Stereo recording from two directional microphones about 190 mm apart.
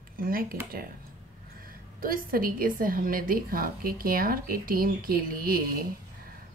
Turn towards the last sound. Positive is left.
turn(degrees=-50)  # may be behind; listen again after turning